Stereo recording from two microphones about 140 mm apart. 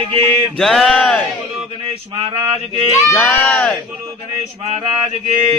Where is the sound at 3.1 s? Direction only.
10° left (ahead or behind).